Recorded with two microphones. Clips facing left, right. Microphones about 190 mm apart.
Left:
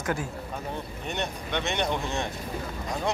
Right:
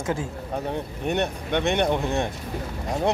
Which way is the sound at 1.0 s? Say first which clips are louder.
Right 8 dB; 60° right (ahead or behind).